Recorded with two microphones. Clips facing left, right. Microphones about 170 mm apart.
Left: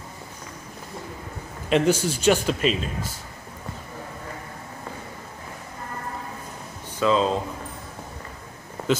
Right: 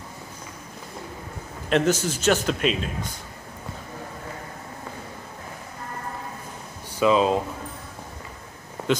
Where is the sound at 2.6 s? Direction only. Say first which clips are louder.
Left 1 dB; centre (ahead or behind).